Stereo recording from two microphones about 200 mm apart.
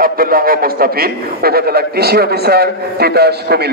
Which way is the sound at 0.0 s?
45° right (ahead or behind).